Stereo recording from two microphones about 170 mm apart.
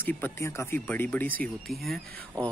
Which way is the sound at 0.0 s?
10° left (ahead or behind).